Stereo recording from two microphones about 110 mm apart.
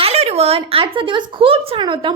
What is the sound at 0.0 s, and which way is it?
A woman's voice, 70° right (ahead or behind).